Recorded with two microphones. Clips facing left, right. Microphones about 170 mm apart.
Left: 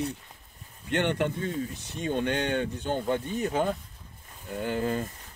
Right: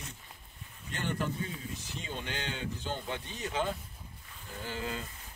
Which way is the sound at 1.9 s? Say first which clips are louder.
Left 14 dB; 60° left (ahead or behind).